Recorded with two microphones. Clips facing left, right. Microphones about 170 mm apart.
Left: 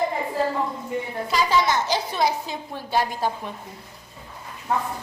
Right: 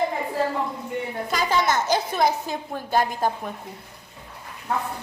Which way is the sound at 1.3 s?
50° right (ahead or behind).